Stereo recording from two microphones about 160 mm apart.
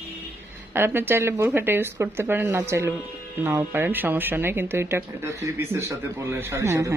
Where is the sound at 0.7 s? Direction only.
15° right (ahead or behind).